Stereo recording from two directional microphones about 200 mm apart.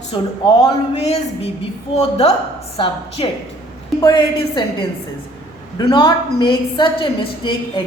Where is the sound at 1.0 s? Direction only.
30° left (ahead or behind).